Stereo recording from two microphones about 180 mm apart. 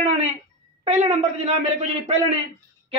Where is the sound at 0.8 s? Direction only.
40° right (ahead or behind).